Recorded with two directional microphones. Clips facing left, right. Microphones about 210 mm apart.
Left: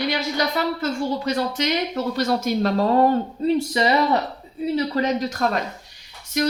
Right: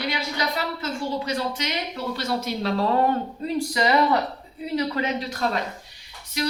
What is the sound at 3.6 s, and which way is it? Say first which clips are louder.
Speech: right 3 dB; 30° left (ahead or behind).